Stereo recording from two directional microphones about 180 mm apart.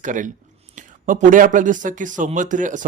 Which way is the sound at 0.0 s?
45° right (ahead or behind).